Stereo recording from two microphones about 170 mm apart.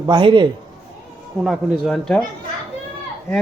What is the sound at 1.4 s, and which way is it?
Speech, centre (ahead or behind).